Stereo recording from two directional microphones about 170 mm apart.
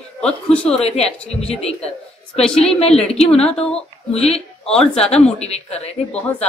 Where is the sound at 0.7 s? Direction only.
35° left (ahead or behind).